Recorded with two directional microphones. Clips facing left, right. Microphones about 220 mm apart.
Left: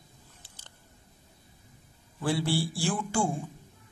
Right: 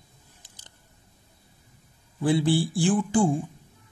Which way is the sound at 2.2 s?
20° right (ahead or behind).